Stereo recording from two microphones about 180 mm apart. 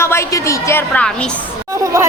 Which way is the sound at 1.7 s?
15° right (ahead or behind).